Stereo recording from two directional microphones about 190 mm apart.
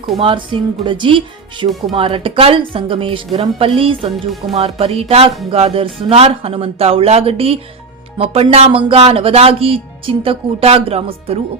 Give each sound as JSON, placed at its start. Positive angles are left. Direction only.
{"t": 0.2, "sound": "speech", "side_deg": -25}